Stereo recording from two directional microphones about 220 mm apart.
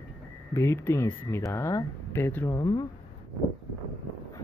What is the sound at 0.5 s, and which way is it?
Speech, 10° left (ahead or behind).